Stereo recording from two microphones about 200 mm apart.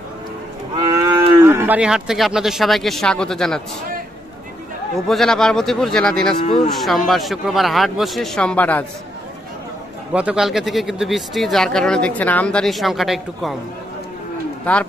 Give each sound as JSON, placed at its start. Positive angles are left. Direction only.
{"t": 0.7, "sound": "cattle", "side_deg": -25}
{"t": 1.3, "sound": "speech", "side_deg": -10}
{"t": 5.0, "sound": "speech", "side_deg": 0}
{"t": 10.1, "sound": "speech", "side_deg": -5}